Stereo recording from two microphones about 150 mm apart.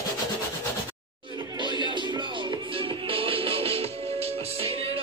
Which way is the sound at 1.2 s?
30° right (ahead or behind).